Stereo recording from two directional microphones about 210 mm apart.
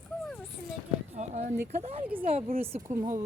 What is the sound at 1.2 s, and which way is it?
Speech, 35° right (ahead or behind).